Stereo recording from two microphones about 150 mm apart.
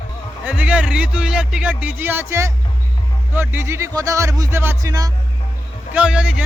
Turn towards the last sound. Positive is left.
turn(degrees=-5)  # may be behind; listen again after turning